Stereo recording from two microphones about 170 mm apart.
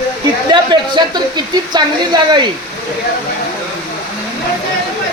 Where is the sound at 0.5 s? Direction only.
25° right (ahead or behind).